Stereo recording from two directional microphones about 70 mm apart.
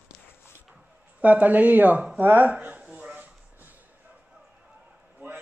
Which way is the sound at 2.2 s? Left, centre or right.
Right.